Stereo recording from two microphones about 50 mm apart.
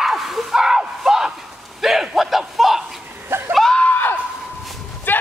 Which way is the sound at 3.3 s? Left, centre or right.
Right.